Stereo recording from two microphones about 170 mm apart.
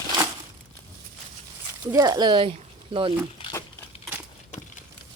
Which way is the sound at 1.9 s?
20° right (ahead or behind).